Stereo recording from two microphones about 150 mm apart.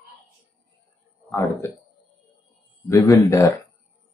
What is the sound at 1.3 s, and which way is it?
Speech, 20° left (ahead or behind).